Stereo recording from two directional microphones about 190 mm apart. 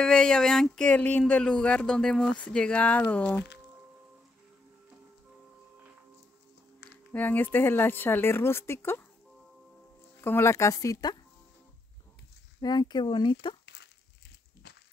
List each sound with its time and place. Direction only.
0.0 s speech: 5° left (ahead or behind)
7.1 s speech: 10° left (ahead or behind)
10.2 s speech: 15° left (ahead or behind)
12.6 s speech: 20° left (ahead or behind)